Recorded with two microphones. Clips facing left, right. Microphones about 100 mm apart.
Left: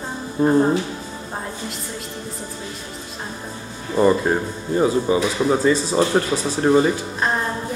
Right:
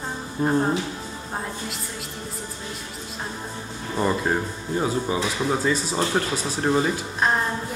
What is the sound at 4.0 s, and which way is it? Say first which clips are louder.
Speech: left 6 dB; 5° left (ahead or behind).